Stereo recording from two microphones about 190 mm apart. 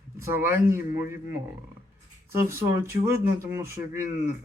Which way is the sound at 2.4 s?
15° right (ahead or behind).